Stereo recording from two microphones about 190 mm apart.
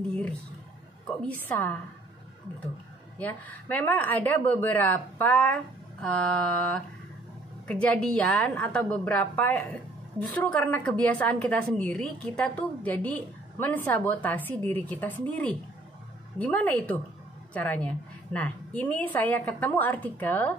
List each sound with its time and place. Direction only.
1.2 s a woman's voice: 10° left (ahead or behind)
3.2 s a woman's voice: 10° left (ahead or behind)
6.0 s mantra: 5° left (ahead or behind)
7.6 s a woman's voice: 5° left (ahead or behind)